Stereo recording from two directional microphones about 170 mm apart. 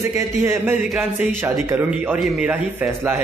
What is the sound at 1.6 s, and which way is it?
Speech, 10° right (ahead or behind).